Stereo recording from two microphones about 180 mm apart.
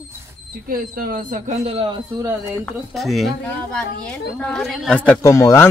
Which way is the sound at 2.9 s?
Centre (ahead or behind).